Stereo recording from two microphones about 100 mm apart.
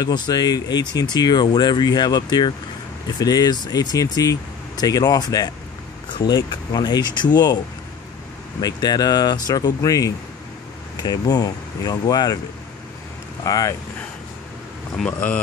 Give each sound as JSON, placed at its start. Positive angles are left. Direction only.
{"t": 0.0, "sound": "speech", "side_deg": 45}
{"t": 8.5, "sound": "speech", "side_deg": 40}
{"t": 13.5, "sound": "speech", "side_deg": 35}
{"t": 15.0, "sound": "speech", "side_deg": 15}